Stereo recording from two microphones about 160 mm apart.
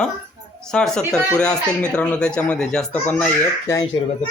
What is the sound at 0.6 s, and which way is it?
Speech, 5° left (ahead or behind).